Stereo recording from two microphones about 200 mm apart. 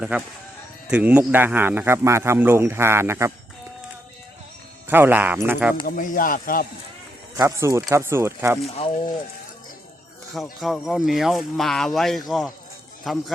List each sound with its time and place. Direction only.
0.9 s speech: 5° right (ahead or behind)
4.9 s speech: 10° right (ahead or behind)
5.8 s speech: 40° left (ahead or behind)
7.3 s speech: 15° right (ahead or behind)
8.6 s speech: 30° left (ahead or behind)
10.3 s speech: centre (ahead or behind)